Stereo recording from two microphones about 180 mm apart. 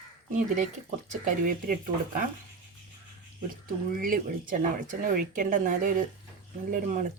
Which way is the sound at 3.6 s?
50° right (ahead or behind).